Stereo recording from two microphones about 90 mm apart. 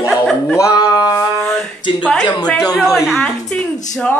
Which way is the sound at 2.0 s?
10° left (ahead or behind).